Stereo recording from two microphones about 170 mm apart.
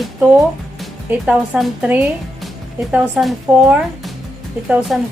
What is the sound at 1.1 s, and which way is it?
Speech, 10° right (ahead or behind).